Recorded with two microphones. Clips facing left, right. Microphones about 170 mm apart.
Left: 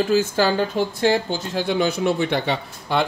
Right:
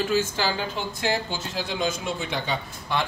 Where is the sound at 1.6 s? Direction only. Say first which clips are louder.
Left 9 dB; 65° left (ahead or behind).